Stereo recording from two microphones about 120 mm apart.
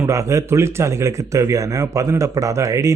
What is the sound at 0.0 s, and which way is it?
Speech, 25° right (ahead or behind).